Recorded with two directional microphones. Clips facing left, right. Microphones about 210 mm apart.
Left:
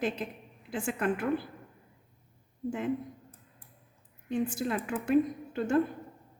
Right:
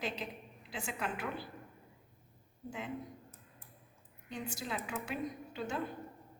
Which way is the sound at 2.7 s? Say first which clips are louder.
Left 11 dB; 50° left (ahead or behind).